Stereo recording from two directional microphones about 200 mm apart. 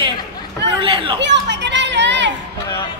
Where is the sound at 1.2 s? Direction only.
60° right (ahead or behind).